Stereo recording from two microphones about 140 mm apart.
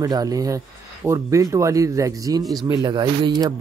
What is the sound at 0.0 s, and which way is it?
Speech, 25° right (ahead or behind).